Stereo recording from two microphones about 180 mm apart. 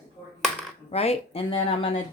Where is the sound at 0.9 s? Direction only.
35° left (ahead or behind).